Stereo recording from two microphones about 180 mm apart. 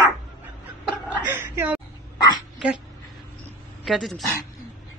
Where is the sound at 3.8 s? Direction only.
Centre (ahead or behind).